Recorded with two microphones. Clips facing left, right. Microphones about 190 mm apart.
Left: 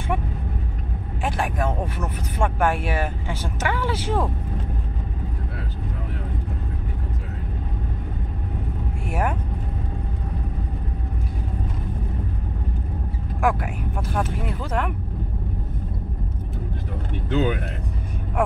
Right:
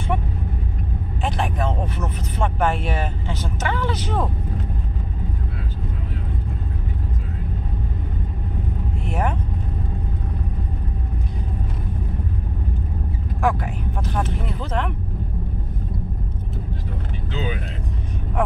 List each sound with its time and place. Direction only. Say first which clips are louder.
1.2 s vehicle: even; 10° left (ahead or behind)
13.4 s a sound: even; 10° left (ahead or behind)
17.3 s vehicle: left 6 dB; 60° left (ahead or behind)